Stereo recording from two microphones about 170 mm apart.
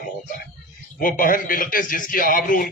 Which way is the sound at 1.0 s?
55° left (ahead or behind).